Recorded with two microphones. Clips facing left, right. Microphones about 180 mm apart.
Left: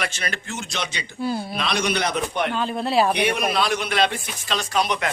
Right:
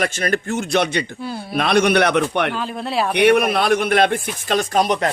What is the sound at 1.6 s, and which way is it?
Speech, 55° right (ahead or behind).